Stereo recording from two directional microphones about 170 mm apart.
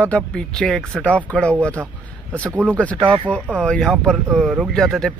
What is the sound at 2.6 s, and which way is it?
Speech, 10° left (ahead or behind).